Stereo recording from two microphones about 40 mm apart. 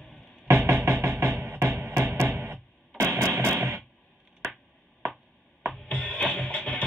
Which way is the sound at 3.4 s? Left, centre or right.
Right.